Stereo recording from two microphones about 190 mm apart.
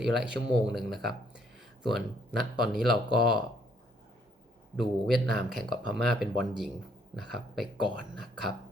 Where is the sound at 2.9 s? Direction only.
25° left (ahead or behind).